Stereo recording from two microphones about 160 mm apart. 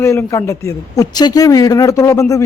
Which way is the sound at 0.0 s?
15° left (ahead or behind).